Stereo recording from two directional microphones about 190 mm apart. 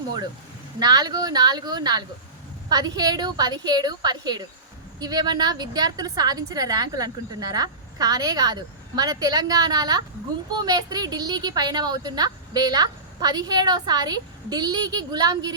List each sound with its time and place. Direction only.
0.8 s a woman's voice: 20° right (ahead or behind)